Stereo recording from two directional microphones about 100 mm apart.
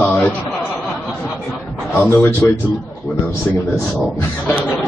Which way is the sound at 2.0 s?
25° left (ahead or behind).